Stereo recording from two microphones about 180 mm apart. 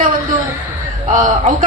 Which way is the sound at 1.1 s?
45° right (ahead or behind).